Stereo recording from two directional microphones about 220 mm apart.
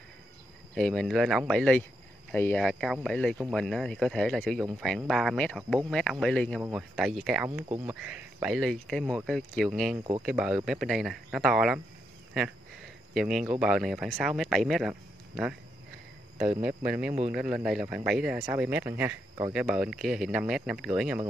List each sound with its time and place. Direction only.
0.7 s speech: centre (ahead or behind)
7.4 s speech: 15° right (ahead or behind)
7.8 s speech: 5° right (ahead or behind)
13.1 s speech: centre (ahead or behind)
16.6 s speech: 5° right (ahead or behind)